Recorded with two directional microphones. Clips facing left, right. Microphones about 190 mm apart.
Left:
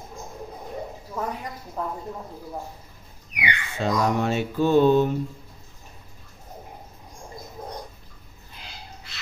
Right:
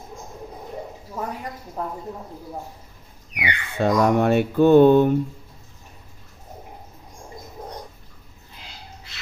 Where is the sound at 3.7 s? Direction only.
55° right (ahead or behind).